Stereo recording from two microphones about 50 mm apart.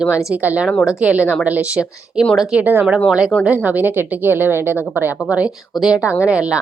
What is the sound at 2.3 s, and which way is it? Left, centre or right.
Speech, centre.